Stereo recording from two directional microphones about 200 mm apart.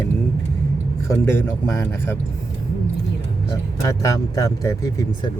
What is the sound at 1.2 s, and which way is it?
Speech, 15° left (ahead or behind).